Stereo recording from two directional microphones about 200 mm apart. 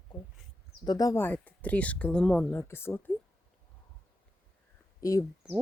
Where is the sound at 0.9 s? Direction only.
20° left (ahead or behind).